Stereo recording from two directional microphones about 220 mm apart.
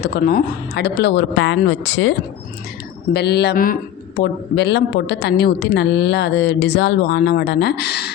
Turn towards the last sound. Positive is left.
turn(degrees=50)  # may be behind; listen again after turning